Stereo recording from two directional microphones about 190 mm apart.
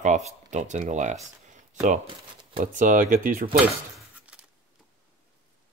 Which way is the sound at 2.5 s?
45° right (ahead or behind).